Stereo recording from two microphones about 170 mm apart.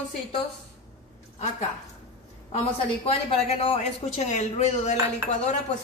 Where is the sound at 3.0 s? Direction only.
35° left (ahead or behind).